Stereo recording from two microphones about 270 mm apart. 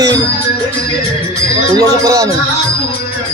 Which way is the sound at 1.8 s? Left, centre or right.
Centre.